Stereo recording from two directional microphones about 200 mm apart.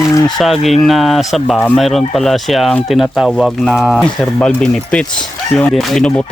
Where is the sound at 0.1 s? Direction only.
15° left (ahead or behind).